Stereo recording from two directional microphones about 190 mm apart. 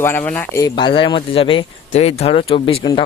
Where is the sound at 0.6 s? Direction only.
25° left (ahead or behind).